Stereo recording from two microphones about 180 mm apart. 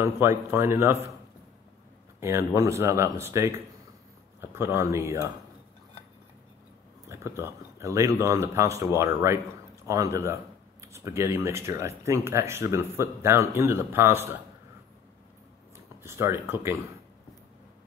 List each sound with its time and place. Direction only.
0.0 s speech: 15° right (ahead or behind)
2.1 s speech: 15° right (ahead or behind)
7.1 s speech: 15° right (ahead or behind)
16.0 s speech: 15° right (ahead or behind)